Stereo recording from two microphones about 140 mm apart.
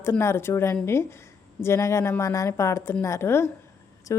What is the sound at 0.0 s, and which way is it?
A woman's voice, 20° left (ahead or behind).